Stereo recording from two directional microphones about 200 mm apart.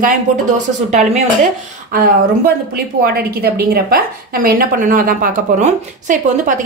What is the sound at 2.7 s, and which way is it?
A woman's voice, 50° right (ahead or behind).